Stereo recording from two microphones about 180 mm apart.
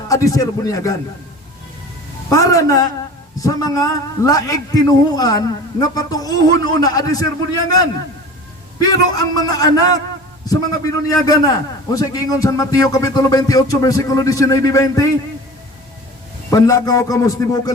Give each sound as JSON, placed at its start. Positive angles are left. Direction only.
{"t": 0.1, "sound": "speech", "side_deg": 20}
{"t": 2.3, "sound": "speech", "side_deg": 20}
{"t": 8.8, "sound": "speech", "side_deg": 20}
{"t": 16.5, "sound": "speech", "side_deg": 20}